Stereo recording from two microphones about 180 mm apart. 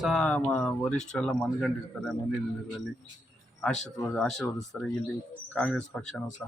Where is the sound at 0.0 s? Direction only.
Centre (ahead or behind).